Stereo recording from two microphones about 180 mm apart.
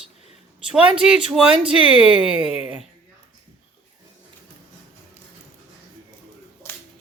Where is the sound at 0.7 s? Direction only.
5° right (ahead or behind).